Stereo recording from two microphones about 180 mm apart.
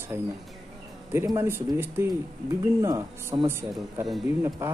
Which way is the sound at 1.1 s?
15° right (ahead or behind).